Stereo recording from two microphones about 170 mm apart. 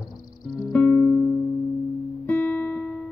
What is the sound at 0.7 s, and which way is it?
Music, 10° left (ahead or behind).